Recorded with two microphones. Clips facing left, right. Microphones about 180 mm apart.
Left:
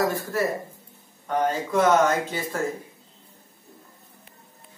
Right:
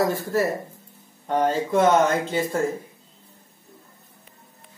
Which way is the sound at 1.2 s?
30° right (ahead or behind).